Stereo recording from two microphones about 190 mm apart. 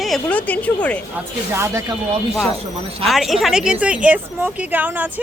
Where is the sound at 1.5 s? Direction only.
15° right (ahead or behind).